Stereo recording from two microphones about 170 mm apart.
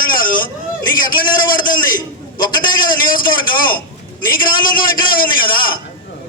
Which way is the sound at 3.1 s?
55° left (ahead or behind).